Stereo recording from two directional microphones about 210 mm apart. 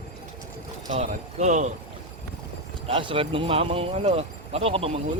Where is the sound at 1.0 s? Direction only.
35° right (ahead or behind).